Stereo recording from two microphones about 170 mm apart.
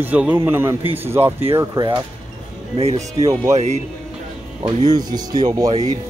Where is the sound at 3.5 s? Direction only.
40° right (ahead or behind).